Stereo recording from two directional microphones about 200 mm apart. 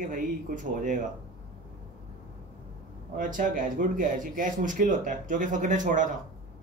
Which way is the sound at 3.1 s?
40° right (ahead or behind).